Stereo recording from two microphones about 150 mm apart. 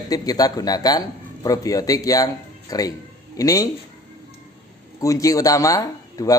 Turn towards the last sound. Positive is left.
turn(degrees=25)  # may be behind; listen again after turning